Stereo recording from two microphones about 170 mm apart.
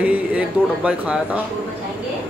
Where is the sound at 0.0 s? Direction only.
10° right (ahead or behind).